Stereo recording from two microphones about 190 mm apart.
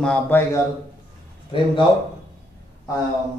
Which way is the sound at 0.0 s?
10° left (ahead or behind).